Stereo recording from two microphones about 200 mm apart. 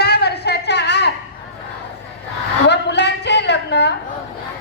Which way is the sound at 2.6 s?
60° left (ahead or behind).